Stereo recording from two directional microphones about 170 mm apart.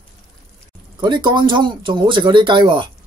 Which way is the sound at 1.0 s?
25° right (ahead or behind).